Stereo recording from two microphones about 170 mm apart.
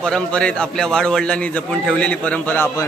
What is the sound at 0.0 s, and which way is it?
A man's voice, 5° left (ahead or behind).